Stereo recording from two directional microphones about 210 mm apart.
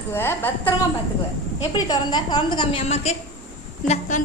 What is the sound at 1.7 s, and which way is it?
A woman's voice, 20° left (ahead or behind).